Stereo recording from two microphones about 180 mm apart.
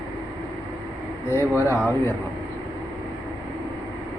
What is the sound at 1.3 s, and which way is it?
Speech, 15° left (ahead or behind).